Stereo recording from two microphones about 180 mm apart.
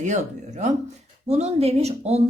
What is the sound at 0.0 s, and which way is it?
Speech, 40° right (ahead or behind).